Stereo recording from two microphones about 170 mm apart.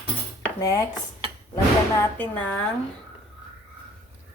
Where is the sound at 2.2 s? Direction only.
10° left (ahead or behind).